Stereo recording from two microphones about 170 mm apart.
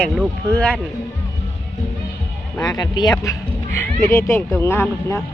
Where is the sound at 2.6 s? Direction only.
20° left (ahead or behind).